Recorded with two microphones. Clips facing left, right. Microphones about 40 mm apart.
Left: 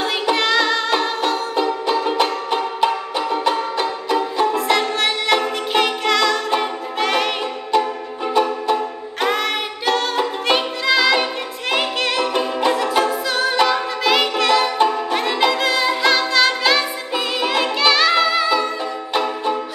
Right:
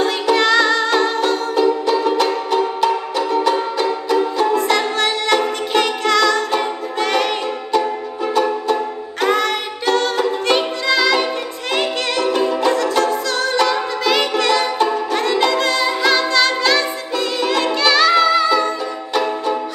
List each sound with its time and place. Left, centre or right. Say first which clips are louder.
0.0 s music: right 3 dB; centre
4.5 s music: right 2 dB; centre
9.2 s music: right 3 dB; centre